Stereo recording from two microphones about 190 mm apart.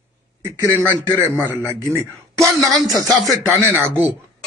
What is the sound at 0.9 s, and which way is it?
Speech, 20° left (ahead or behind).